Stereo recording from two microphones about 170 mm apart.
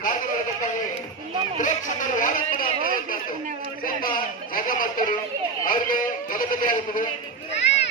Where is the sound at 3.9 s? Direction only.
55° left (ahead or behind).